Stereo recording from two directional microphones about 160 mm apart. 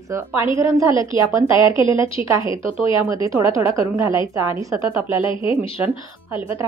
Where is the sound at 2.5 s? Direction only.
35° left (ahead or behind).